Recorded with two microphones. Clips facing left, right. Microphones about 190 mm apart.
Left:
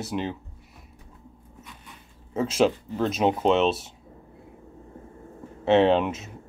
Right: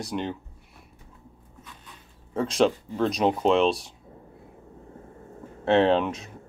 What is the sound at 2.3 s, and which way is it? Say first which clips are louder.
Speech: even; 5° left (ahead or behind).